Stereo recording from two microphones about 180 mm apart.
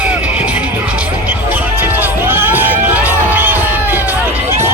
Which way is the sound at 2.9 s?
10° right (ahead or behind).